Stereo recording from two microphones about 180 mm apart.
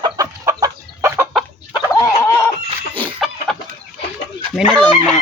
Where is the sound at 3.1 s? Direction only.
Centre (ahead or behind).